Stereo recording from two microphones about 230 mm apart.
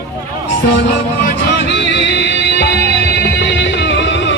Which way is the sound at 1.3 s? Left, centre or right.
Left.